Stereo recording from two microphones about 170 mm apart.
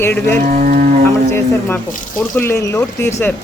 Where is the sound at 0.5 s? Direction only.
55° right (ahead or behind).